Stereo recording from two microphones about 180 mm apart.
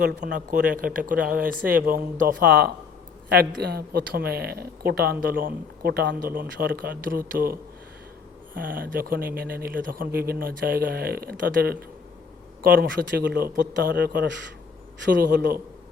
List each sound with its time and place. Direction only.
0.3 s speech: 50° right (ahead or behind)
8.5 s speech: 50° right (ahead or behind)